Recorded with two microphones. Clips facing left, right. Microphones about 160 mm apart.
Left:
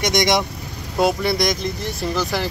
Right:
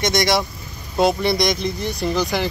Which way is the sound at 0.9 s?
Centre (ahead or behind).